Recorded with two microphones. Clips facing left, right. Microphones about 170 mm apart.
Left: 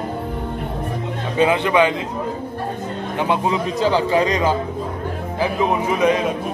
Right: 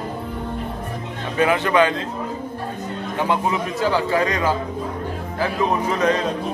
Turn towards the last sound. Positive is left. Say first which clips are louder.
# left 2 dB
turn(degrees=10)  # may be behind; listen again after turning